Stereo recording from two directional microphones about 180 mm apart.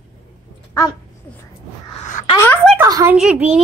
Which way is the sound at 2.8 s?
20° right (ahead or behind).